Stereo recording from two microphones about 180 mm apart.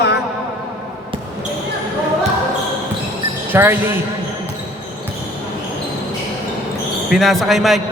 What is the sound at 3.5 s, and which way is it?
Speech, 10° right (ahead or behind).